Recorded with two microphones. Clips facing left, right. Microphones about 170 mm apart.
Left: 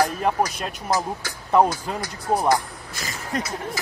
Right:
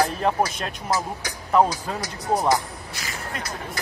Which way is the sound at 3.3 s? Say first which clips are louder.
Left 10 dB; 40° left (ahead or behind).